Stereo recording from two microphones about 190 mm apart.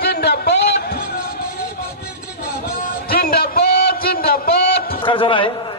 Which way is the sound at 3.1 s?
50° left (ahead or behind).